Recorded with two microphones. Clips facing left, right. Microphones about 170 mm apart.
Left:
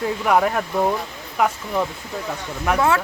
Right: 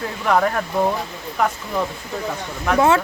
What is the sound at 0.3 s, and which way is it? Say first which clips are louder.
Speech: right 1 dB; 5° left (ahead or behind).